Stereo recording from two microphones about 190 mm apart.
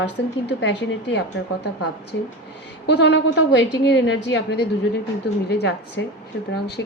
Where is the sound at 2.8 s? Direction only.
65° left (ahead or behind).